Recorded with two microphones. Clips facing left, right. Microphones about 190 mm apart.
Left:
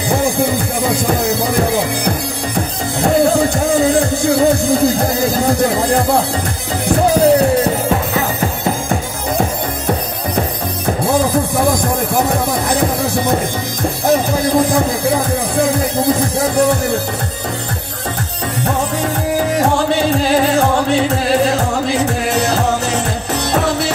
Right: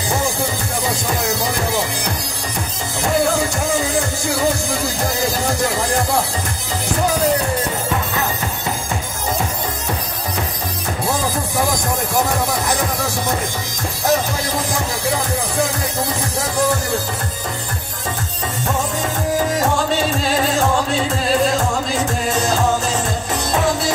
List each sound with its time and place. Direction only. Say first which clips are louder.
0.1 s music: left 7 dB; 55° left (ahead or behind)
11.1 s music: left 7 dB; 55° left (ahead or behind)
19.5 s music: left 4 dB; 65° left (ahead or behind)